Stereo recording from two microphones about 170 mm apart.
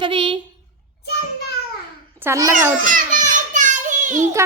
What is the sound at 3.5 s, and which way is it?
Children playing, 45° right (ahead or behind).